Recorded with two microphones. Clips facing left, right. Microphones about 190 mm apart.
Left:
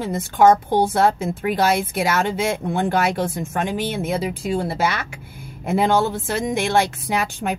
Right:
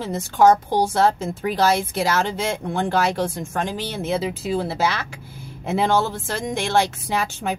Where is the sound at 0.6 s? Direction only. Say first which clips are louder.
Left 2 dB; 20° left (ahead or behind).